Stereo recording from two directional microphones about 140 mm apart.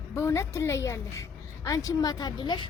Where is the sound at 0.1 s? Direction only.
20° left (ahead or behind).